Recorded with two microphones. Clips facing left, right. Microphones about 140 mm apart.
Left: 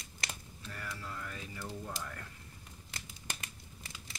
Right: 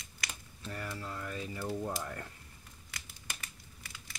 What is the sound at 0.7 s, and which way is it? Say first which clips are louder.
Speech: right 4 dB; 30° right (ahead or behind).